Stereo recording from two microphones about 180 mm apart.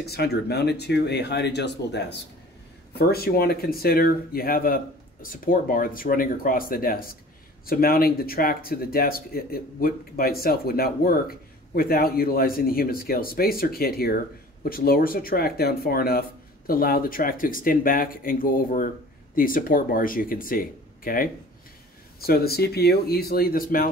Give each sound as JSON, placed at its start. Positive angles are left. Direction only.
{"t": 0.0, "sound": "speech", "side_deg": 60}